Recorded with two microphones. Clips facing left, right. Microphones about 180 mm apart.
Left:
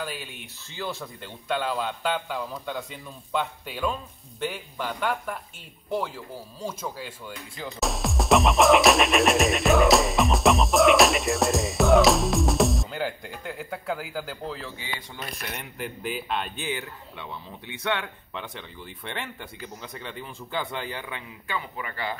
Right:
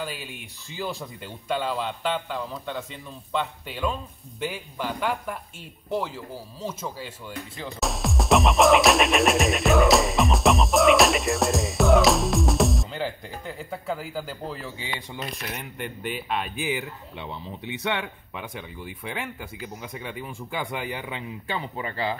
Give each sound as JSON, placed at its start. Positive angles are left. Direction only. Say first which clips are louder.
{"t": 0.0, "sound": "a man's voice", "louder": "right 1 dB", "side_deg": -5}
{"t": 1.5, "sound": "a man's voice", "louder": "even", "side_deg": 0}
{"t": 21.5, "sound": "speech", "louder": "right 2 dB", "side_deg": -30}